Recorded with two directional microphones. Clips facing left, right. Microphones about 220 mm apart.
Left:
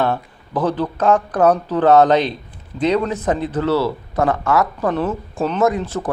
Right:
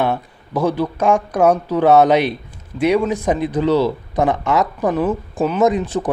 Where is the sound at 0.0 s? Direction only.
10° right (ahead or behind).